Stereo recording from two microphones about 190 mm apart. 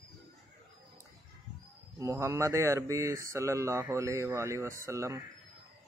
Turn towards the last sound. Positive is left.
turn(degrees=-15)  # may be behind; listen again after turning